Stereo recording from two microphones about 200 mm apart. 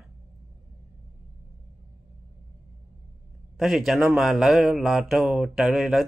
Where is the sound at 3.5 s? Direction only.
Centre (ahead or behind).